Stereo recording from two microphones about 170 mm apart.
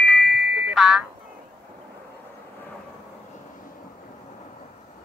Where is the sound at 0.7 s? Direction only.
5° right (ahead or behind).